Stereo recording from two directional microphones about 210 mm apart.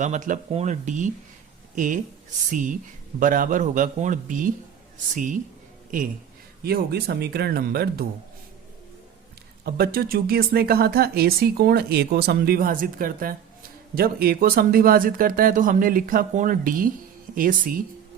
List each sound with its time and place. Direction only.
0.0 s a man's voice: 35° right (ahead or behind)
9.6 s speech: 45° right (ahead or behind)